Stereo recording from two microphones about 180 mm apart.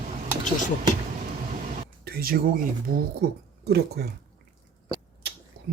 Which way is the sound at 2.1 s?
55° right (ahead or behind).